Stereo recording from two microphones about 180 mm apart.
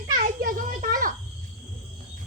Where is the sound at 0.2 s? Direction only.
50° right (ahead or behind).